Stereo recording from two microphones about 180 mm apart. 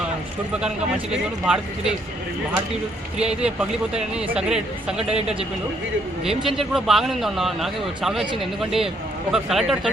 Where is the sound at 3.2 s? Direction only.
5° right (ahead or behind).